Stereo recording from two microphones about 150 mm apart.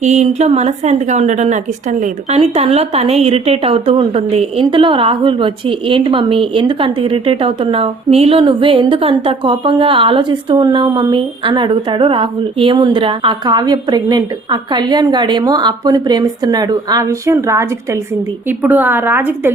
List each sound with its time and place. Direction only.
0.0 s a woman's voice: 50° right (ahead or behind)
2.4 s a woman's voice: 40° right (ahead or behind); by 19.5 s 15° right (ahead or behind)